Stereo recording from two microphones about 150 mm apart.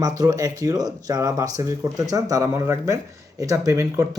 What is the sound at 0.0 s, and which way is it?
Speech, 25° right (ahead or behind).